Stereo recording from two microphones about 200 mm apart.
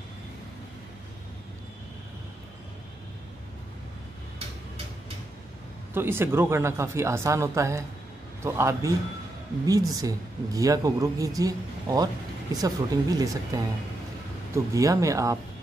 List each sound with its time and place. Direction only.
5.9 s speech: 10° right (ahead or behind)